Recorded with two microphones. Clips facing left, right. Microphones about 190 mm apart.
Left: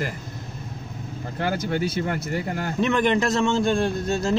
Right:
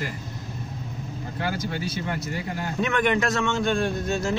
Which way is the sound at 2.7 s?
30° left (ahead or behind).